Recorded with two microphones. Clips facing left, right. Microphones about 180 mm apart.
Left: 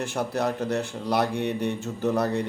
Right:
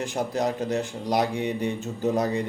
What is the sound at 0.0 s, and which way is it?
Speech, 15° right (ahead or behind).